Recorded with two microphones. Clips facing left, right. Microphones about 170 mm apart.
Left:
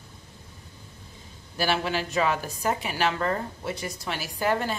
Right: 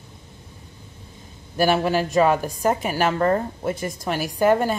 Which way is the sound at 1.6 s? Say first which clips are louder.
Right 7 dB; 45° right (ahead or behind).